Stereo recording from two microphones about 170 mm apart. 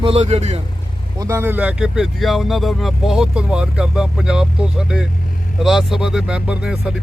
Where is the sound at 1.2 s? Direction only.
15° right (ahead or behind).